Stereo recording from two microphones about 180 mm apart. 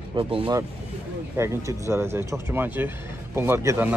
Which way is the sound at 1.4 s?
15° right (ahead or behind).